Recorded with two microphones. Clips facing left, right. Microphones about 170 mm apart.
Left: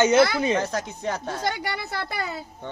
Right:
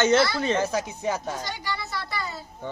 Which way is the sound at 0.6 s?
5° right (ahead or behind).